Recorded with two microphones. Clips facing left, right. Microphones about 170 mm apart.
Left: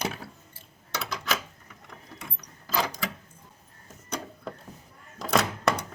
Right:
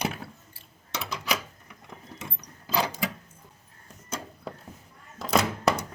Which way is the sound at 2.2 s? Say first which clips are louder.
Right 2 dB; 15° right (ahead or behind).